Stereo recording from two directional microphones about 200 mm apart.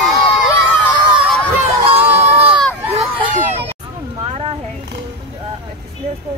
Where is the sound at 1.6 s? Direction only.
30° right (ahead or behind).